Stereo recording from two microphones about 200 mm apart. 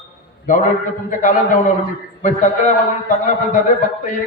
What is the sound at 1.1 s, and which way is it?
A man's voice, 40° left (ahead or behind).